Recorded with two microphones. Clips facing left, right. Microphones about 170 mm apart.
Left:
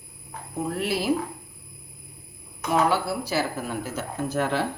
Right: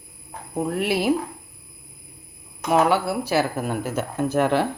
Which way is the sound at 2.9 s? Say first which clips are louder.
Right 4 dB; 60° right (ahead or behind).